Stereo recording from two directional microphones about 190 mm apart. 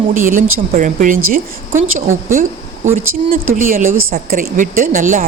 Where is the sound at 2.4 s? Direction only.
40° right (ahead or behind).